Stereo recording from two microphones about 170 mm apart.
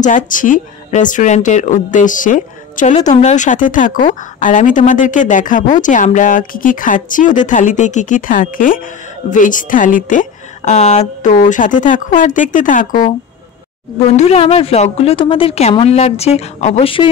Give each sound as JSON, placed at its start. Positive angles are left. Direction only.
{"t": 0.0, "sound": "a woman's voice", "side_deg": 50}
{"t": 14.1, "sound": "a woman's voice", "side_deg": 40}